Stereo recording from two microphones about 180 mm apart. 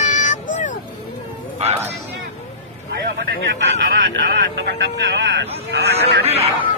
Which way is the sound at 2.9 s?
60° right (ahead or behind).